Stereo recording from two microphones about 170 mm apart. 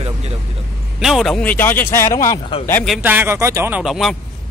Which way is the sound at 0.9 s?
Centre (ahead or behind).